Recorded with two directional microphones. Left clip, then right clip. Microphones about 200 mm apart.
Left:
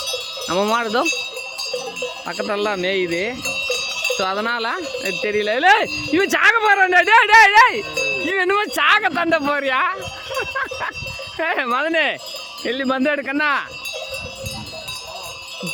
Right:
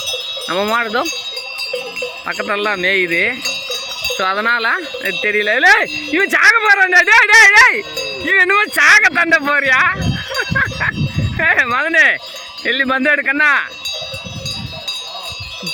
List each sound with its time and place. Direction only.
0.4 s speech: 5° left (ahead or behind)
2.2 s speech: centre (ahead or behind)
3.7 s cowbell: 50° right (ahead or behind)
4.2 s speech: centre (ahead or behind)